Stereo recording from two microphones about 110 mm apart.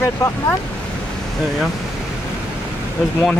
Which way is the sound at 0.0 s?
25° left (ahead or behind).